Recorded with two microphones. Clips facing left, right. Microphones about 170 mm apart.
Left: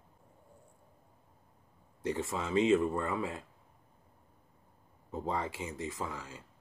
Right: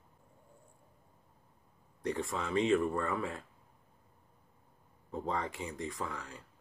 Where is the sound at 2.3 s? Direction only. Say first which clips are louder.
Left 2 dB; 10° left (ahead or behind).